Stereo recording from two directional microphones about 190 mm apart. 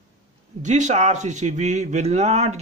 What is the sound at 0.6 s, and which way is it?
Speech, 40° right (ahead or behind).